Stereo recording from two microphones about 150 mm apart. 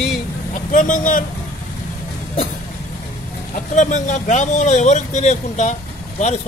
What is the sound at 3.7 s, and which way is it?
Speech, 55° left (ahead or behind).